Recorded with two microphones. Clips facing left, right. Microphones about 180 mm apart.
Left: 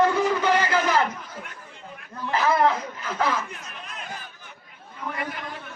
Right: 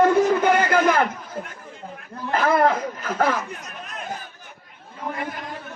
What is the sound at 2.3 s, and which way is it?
A man's voice, 50° right (ahead or behind).